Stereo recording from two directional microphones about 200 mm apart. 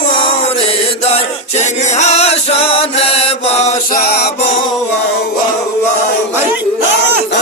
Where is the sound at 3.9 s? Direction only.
55° left (ahead or behind).